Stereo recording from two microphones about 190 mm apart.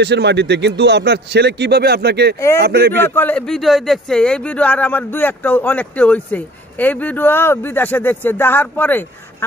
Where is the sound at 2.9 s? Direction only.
10° left (ahead or behind).